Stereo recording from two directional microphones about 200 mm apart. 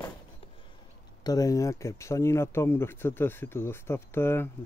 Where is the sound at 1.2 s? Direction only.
15° left (ahead or behind).